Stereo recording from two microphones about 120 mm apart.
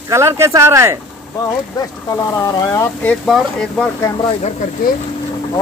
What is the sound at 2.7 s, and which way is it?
Speech, 25° left (ahead or behind).